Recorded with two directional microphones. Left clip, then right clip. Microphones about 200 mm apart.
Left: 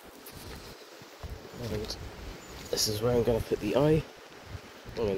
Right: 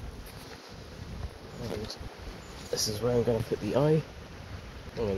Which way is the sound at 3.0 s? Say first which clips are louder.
Even; 20° left (ahead or behind).